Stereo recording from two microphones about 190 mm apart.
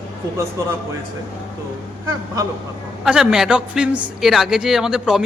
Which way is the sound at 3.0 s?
5° right (ahead or behind).